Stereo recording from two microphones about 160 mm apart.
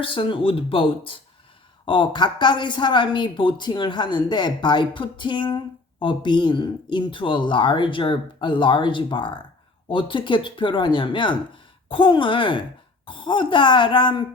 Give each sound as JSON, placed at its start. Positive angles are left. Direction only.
{"t": 0.0, "sound": "speech", "side_deg": 30}